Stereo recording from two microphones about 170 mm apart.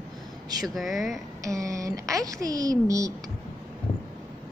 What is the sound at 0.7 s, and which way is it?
Speech, centre (ahead or behind).